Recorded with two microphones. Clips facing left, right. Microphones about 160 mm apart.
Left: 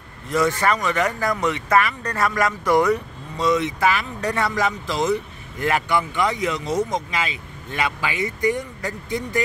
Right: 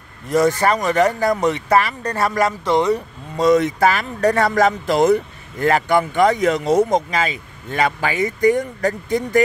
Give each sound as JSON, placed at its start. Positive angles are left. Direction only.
{"t": 0.3, "sound": "speech", "side_deg": -40}
{"t": 3.3, "sound": "speech", "side_deg": -45}
{"t": 5.7, "sound": "speech", "side_deg": -40}
{"t": 7.1, "sound": "speech", "side_deg": -40}